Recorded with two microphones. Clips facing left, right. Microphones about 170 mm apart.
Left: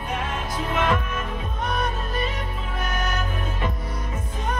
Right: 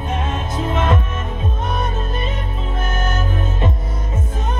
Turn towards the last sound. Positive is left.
turn(degrees=-25)  # may be behind; listen again after turning